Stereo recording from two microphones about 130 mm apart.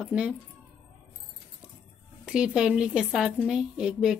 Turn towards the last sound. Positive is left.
turn(degrees=-5)  # may be behind; listen again after turning